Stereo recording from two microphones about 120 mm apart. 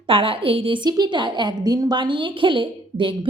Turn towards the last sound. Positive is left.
turn(degrees=-45)  # may be behind; listen again after turning